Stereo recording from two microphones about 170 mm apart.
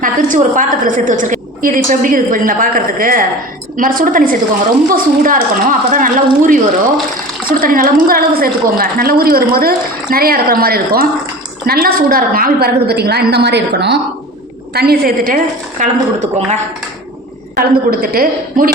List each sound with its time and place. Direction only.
0.0 s a woman's voice: 50° right (ahead or behind); by 14.0 s 85° right
14.7 s a woman's voice: 70° right (ahead or behind)
15.8 s a woman's voice: 40° right (ahead or behind)
17.5 s a woman's voice: 60° right (ahead or behind)